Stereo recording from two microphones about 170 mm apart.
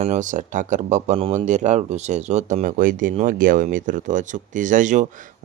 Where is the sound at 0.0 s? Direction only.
45° right (ahead or behind).